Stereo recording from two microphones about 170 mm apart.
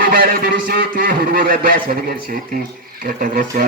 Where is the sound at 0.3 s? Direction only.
55° right (ahead or behind).